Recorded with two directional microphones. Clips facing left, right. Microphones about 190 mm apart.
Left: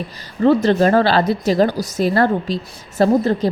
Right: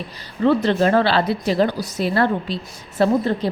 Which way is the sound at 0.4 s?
40° left (ahead or behind).